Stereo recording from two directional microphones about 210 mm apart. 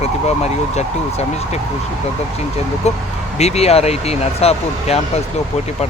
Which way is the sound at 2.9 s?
30° left (ahead or behind).